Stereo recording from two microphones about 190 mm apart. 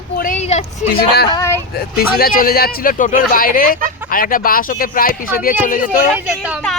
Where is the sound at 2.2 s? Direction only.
50° left (ahead or behind).